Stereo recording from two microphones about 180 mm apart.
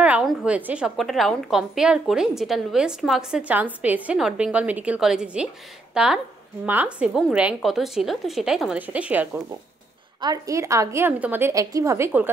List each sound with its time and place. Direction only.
0.0 s a woman's voice: 5° right (ahead or behind)
10.2 s a woman's voice: 20° right (ahead or behind)